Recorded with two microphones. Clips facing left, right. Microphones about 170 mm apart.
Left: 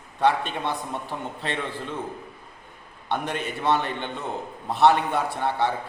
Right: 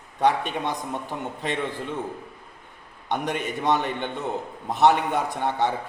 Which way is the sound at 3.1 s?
15° right (ahead or behind).